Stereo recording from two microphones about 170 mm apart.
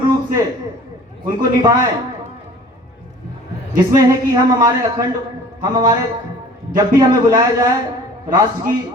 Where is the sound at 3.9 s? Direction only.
20° right (ahead or behind).